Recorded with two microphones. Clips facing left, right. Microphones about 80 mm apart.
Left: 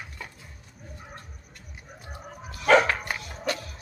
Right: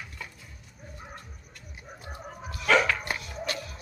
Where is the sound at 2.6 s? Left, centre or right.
Left.